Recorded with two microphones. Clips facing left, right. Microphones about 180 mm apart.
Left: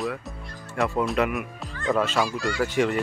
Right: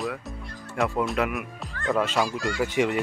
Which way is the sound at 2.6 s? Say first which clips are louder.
Left 1 dB; 15° right (ahead or behind).